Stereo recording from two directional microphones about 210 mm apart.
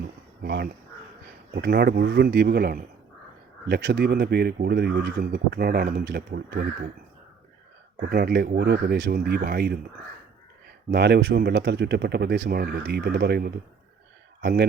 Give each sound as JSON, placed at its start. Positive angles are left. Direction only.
{"t": 0.0, "sound": "a sound", "side_deg": -50}
{"t": 1.5, "sound": "speech", "side_deg": -50}
{"t": 8.1, "sound": "speech", "side_deg": -50}
{"t": 10.9, "sound": "speech", "side_deg": -55}